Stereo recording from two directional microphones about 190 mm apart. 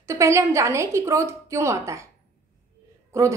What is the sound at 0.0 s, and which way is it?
A woman's voice, 15° right (ahead or behind).